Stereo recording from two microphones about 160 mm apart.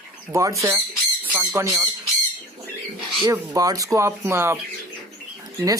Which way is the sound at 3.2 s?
20° right (ahead or behind).